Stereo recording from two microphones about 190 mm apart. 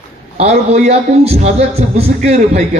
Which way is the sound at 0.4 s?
35° right (ahead or behind).